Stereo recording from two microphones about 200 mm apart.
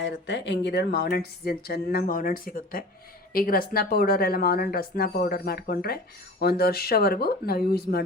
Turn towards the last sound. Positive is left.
turn(degrees=50)  # may be behind; listen again after turning